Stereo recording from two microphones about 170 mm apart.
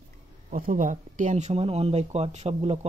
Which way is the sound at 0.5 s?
55° right (ahead or behind).